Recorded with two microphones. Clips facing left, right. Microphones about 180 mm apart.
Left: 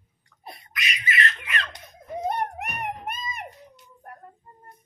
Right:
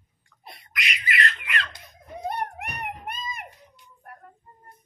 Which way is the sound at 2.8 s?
20° left (ahead or behind).